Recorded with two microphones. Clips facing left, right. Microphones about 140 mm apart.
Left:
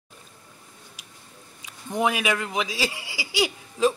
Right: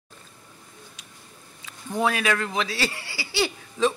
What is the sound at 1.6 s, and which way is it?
Speech, 15° left (ahead or behind).